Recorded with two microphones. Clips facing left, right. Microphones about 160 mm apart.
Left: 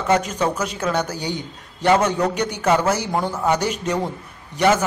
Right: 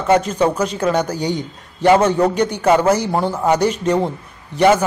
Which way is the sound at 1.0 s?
10° left (ahead or behind).